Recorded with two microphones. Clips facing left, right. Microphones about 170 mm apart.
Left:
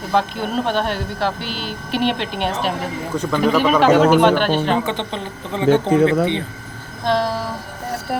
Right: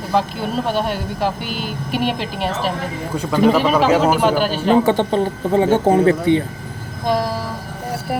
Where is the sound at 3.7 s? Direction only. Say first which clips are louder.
Left 2 dB; centre (ahead or behind).